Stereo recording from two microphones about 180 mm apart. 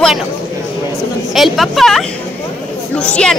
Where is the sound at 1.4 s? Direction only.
Centre (ahead or behind).